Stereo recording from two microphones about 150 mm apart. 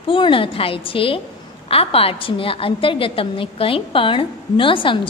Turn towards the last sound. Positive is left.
turn(degrees=35)  # may be behind; listen again after turning